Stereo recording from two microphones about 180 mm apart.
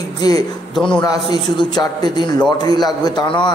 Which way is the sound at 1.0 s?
25° left (ahead or behind).